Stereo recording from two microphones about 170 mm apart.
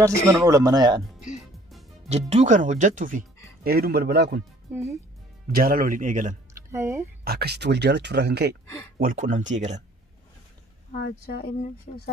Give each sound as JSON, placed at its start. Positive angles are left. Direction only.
{"t": 0.0, "sound": "speech", "side_deg": -20}
{"t": 1.7, "sound": "music", "side_deg": 0}
{"t": 2.0, "sound": "speech", "side_deg": -40}
{"t": 3.6, "sound": "speech", "side_deg": -65}
{"t": 5.5, "sound": "speech", "side_deg": -55}
{"t": 6.5, "sound": "speech", "side_deg": -15}
{"t": 7.2, "sound": "speech", "side_deg": -70}
{"t": 9.0, "sound": "speech", "side_deg": -50}
{"t": 11.0, "sound": "speech", "side_deg": 70}
{"t": 11.9, "sound": "speech", "side_deg": 50}